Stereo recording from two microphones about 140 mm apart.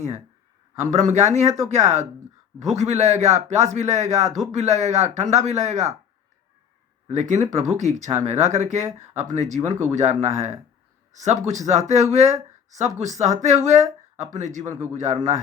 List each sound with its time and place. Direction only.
0.8 s speech: 55° right (ahead or behind)
7.1 s speech: 55° right (ahead or behind)